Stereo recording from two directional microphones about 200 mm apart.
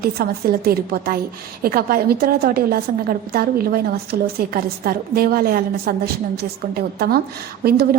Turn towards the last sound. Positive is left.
turn(degrees=-50)  # may be behind; listen again after turning